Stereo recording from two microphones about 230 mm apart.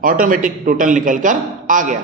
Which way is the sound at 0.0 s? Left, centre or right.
Right.